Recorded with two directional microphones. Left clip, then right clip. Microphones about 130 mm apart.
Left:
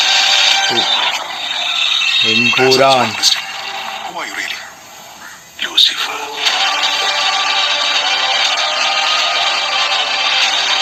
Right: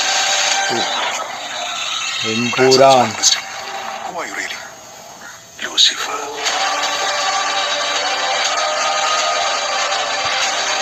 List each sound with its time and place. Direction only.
0.0 s a sound: 50° right (ahead or behind)
3.0 s speech: 55° right (ahead or behind)
5.7 s music: 50° right (ahead or behind)